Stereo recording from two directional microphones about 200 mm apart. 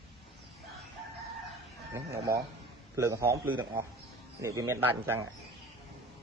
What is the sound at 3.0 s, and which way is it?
A man's voice, 15° right (ahead or behind).